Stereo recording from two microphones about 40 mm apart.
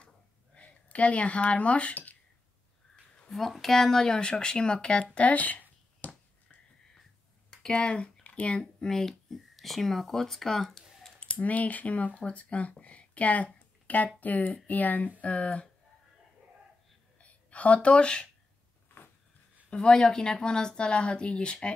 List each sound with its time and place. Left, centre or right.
0.6 s speech: left
3.3 s speech: centre; by 5.2 s left
5.2 s speech: left
5.9 s finger snapping: left
7.5 s speech: left
8.8 s speech: centre
11.1 s speech: left
15.1 s speech: left
17.2 s a woman's voice: left
19.7 s speech: left